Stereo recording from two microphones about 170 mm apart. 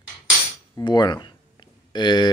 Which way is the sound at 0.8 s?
25° left (ahead or behind).